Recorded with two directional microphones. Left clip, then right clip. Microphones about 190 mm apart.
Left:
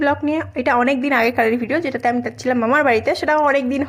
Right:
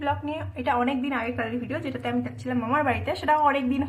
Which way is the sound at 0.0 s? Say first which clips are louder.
Left 10 dB; 40° left (ahead or behind).